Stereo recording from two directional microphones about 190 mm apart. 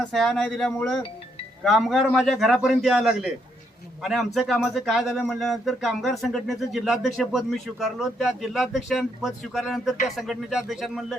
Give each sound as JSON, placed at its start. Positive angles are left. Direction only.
{"t": 0.0, "sound": "speech", "side_deg": 5}